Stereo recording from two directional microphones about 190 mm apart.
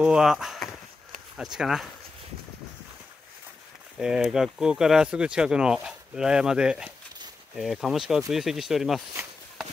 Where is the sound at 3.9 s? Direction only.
5° right (ahead or behind).